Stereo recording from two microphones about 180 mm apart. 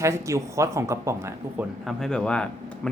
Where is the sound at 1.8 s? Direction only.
5° left (ahead or behind).